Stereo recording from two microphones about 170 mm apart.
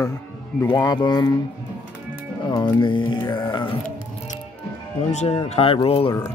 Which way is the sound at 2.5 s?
20° left (ahead or behind).